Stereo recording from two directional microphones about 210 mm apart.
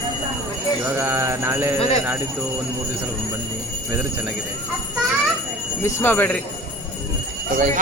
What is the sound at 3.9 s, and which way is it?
Speech, 5° right (ahead or behind).